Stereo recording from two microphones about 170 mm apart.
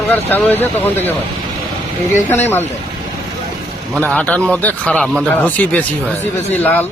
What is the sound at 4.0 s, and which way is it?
Speech, 5° left (ahead or behind).